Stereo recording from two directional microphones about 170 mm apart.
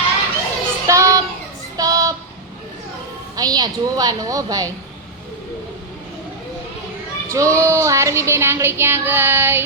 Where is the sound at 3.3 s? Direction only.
25° right (ahead or behind).